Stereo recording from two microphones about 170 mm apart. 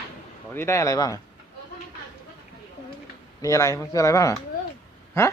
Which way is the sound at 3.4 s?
15° left (ahead or behind).